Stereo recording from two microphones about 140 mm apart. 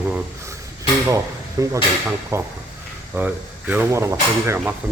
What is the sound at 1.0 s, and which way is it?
Speech, 20° right (ahead or behind).